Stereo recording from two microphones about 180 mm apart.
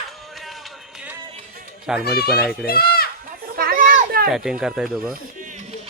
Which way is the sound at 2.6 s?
60° left (ahead or behind).